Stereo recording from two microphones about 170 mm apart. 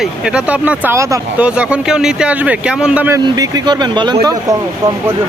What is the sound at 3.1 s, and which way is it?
Speech, 20° right (ahead or behind).